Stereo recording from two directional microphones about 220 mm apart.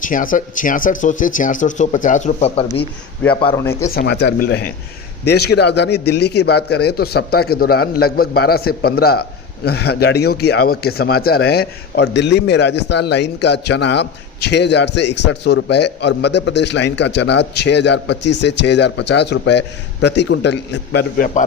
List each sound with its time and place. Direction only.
0.0 s speech: 35° left (ahead or behind)
3.4 s speech: 15° left (ahead or behind)
3.9 s speech: 50° left (ahead or behind)